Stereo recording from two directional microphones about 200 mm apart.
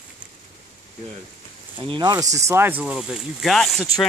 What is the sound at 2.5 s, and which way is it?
Speech, 10° right (ahead or behind).